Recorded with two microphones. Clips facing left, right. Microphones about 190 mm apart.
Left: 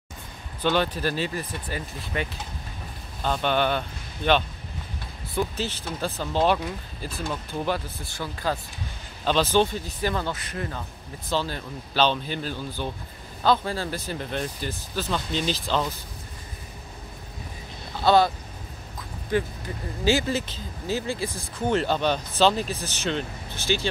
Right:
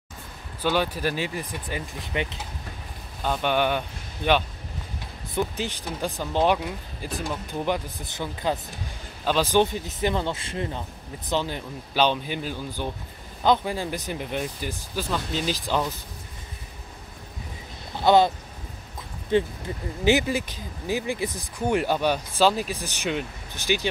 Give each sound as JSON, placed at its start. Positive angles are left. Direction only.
{"t": 0.6, "sound": "speech", "side_deg": -10}
{"t": 5.6, "sound": "speech", "side_deg": -15}
{"t": 18.0, "sound": "speech", "side_deg": -20}
{"t": 19.3, "sound": "speech", "side_deg": -25}